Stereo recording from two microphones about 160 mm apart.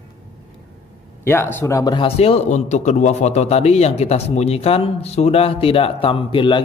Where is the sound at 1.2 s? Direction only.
15° left (ahead or behind).